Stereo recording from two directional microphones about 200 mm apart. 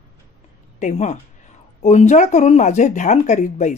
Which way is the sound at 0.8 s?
35° left (ahead or behind).